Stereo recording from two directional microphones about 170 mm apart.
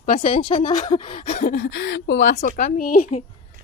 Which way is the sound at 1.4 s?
60° left (ahead or behind).